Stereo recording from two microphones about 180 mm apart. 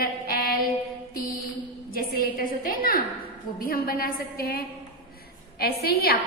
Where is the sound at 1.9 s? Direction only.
55° left (ahead or behind).